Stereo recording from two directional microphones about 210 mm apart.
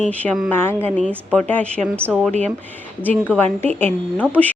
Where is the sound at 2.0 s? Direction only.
5° right (ahead or behind).